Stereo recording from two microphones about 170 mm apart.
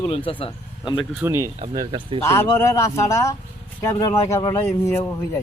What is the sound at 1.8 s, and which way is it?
Speech, 25° right (ahead or behind).